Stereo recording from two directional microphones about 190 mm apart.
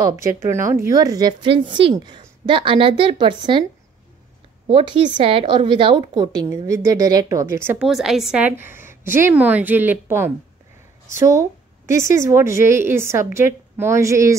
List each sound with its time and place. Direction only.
0.0 s a woman's voice: 15° right (ahead or behind)
4.6 s a woman's voice: 25° right (ahead or behind)
7.9 s a woman's voice: centre (ahead or behind)